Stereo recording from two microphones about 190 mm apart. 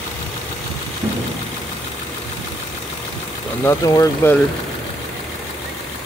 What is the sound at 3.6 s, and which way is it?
Speech, 15° left (ahead or behind).